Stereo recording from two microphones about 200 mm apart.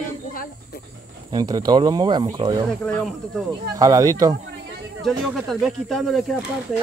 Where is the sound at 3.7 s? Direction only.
15° right (ahead or behind).